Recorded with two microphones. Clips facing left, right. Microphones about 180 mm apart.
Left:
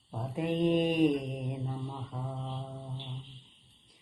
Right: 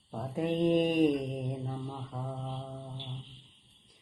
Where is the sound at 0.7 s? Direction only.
45° right (ahead or behind).